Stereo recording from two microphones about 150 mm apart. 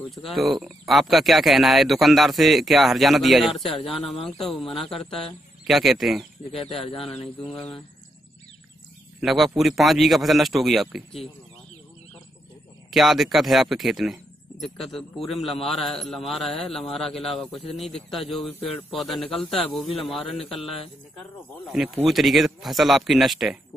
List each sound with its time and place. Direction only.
0.3 s speech: centre (ahead or behind)
9.2 s speech: centre (ahead or behind)
12.9 s speech: centre (ahead or behind)
17.5 s speech: 35° left (ahead or behind)
18.9 s speech: centre (ahead or behind)
21.7 s speech: centre (ahead or behind)